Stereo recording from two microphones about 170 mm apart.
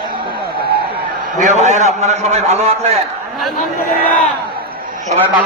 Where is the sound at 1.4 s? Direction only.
45° right (ahead or behind).